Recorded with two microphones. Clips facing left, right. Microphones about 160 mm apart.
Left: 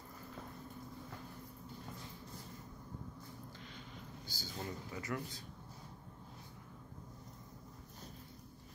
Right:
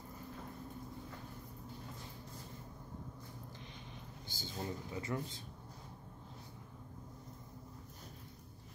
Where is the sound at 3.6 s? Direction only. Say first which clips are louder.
Even; 20° right (ahead or behind).